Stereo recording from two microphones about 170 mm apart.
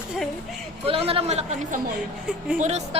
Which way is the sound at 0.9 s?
35° right (ahead or behind).